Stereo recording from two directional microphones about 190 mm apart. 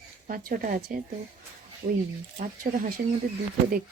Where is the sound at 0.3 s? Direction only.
50° right (ahead or behind).